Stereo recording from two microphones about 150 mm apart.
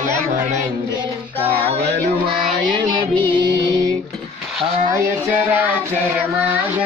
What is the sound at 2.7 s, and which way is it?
Music, 30° right (ahead or behind).